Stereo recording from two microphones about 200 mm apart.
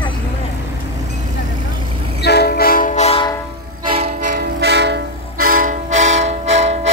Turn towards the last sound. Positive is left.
turn(degrees=-35)  # may be behind; listen again after turning